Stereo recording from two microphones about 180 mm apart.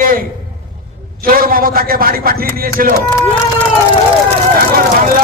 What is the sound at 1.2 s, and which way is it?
A man's voice, 55° right (ahead or behind).